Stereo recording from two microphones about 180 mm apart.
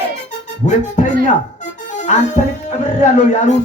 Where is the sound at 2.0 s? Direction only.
40° left (ahead or behind).